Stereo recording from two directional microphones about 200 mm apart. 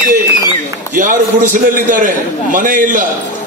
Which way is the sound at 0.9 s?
40° right (ahead or behind).